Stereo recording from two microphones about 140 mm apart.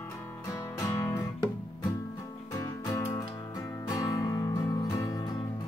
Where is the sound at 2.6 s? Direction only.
25° left (ahead or behind).